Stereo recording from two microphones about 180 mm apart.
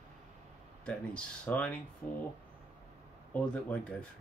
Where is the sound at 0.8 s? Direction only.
5° left (ahead or behind).